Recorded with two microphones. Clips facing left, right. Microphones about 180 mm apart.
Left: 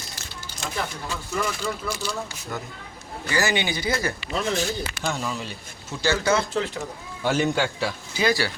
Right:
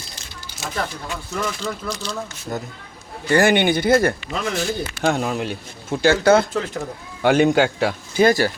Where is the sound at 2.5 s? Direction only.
40° right (ahead or behind).